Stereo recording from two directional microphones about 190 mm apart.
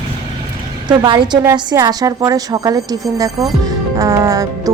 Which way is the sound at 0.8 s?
25° right (ahead or behind).